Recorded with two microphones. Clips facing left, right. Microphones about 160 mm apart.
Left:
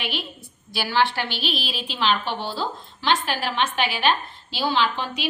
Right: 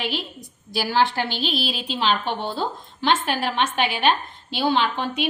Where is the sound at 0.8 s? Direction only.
40° right (ahead or behind).